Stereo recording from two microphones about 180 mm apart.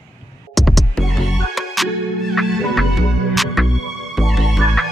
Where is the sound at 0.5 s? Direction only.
Centre (ahead or behind).